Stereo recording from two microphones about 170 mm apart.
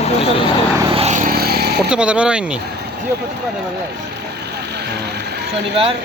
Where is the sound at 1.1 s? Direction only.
60° right (ahead or behind).